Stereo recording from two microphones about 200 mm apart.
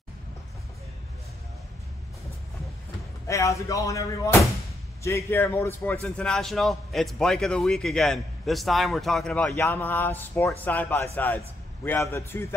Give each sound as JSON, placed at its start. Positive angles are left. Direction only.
{"t": 3.3, "sound": "a man's voice", "side_deg": 15}